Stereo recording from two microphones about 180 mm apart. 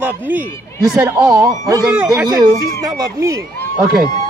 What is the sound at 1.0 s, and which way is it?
A man's voice, 20° right (ahead or behind).